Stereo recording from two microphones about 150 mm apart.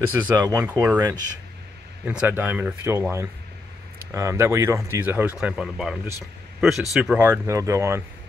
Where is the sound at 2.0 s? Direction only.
10° right (ahead or behind).